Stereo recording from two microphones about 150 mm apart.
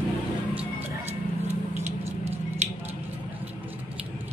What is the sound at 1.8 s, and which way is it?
Squish, 45° right (ahead or behind).